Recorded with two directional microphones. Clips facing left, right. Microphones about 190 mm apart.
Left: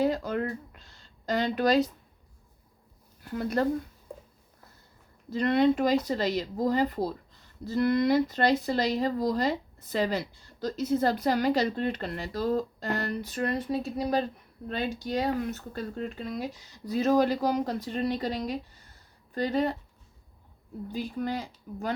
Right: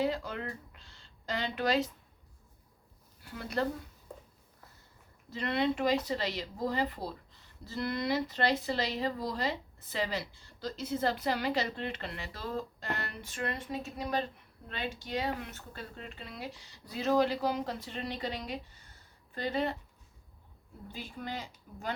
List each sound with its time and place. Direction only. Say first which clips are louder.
0.0 s speech: left 6 dB; 45° left (ahead or behind)
3.3 s speech: left 6 dB; 45° left (ahead or behind)
5.3 s speech: left 8 dB; 45° left (ahead or behind)
20.9 s speech: left 9 dB; 40° left (ahead or behind)